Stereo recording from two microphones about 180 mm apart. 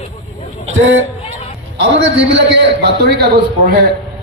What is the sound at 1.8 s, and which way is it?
A man's voice, 75° right (ahead or behind).